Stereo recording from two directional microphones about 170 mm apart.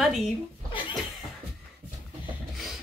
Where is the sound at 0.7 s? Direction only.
30° left (ahead or behind).